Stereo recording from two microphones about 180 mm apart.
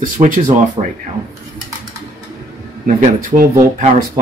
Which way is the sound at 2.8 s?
45° right (ahead or behind).